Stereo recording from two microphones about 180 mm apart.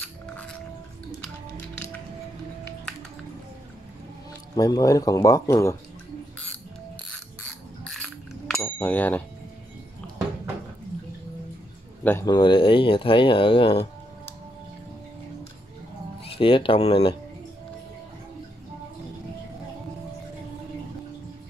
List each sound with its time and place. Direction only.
4.6 s speech: 20° left (ahead or behind)
7.8 s bicycle bell: 5° left (ahead or behind)
12.0 s speech: 10° left (ahead or behind)
12.3 s speech: 25° left (ahead or behind)
16.3 s speech: 30° left (ahead or behind)